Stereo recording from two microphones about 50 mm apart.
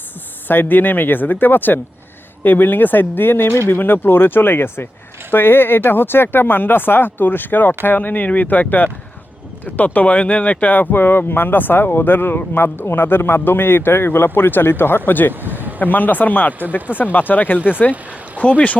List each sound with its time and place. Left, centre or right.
0.4 s speech: left
15.3 s speech: right
15.8 s speech: left